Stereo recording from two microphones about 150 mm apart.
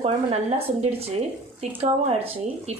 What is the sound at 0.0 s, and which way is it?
A woman's voice, 45° right (ahead or behind).